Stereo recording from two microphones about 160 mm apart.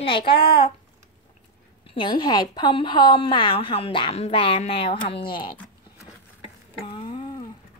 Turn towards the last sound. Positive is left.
turn(degrees=25)  # may be behind; listen again after turning